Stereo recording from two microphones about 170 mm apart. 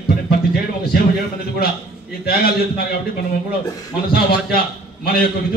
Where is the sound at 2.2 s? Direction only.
65° left (ahead or behind).